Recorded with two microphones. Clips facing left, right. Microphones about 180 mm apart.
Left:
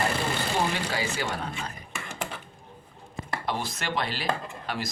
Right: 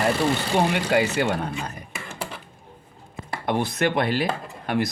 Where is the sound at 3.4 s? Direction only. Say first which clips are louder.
Right 10 dB; 55° right (ahead or behind).